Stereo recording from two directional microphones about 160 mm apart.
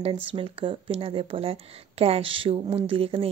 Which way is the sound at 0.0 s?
35° right (ahead or behind).